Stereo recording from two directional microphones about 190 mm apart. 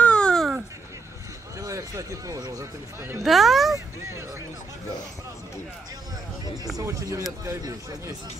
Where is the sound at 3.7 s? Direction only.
15° right (ahead or behind).